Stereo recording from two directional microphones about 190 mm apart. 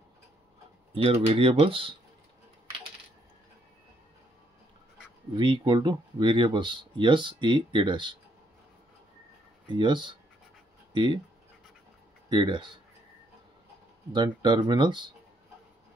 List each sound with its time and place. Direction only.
1.0 s speech: 30° right (ahead or behind)
5.3 s speech: 25° right (ahead or behind)
9.7 s speech: 25° right (ahead or behind)
12.3 s speech: 25° right (ahead or behind)
14.1 s speech: 25° right (ahead or behind)